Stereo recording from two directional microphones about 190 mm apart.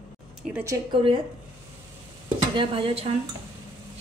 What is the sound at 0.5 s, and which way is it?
Speech, 15° right (ahead or behind).